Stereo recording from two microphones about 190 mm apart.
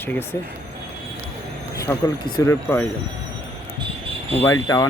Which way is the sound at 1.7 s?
15° left (ahead or behind).